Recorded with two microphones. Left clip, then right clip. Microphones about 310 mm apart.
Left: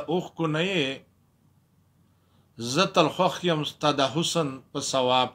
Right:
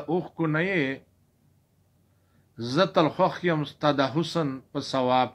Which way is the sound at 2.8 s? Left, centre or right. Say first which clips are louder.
Even; left.